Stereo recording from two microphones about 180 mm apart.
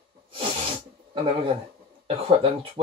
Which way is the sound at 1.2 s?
30° right (ahead or behind).